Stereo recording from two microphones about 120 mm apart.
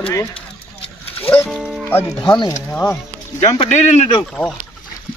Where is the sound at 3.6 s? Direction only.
80° left.